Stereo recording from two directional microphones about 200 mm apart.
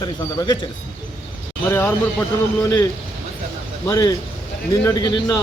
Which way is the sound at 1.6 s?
10° left (ahead or behind).